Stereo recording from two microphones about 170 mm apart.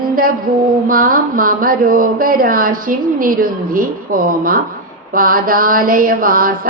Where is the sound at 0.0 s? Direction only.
55° right (ahead or behind).